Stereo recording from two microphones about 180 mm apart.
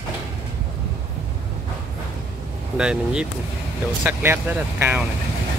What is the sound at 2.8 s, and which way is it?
Speech, 5° right (ahead or behind).